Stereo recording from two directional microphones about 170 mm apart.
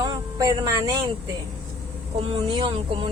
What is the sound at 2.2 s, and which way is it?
Speech, 30° right (ahead or behind).